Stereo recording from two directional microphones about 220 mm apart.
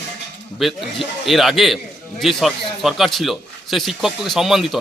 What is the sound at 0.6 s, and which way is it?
A man's voice, centre (ahead or behind).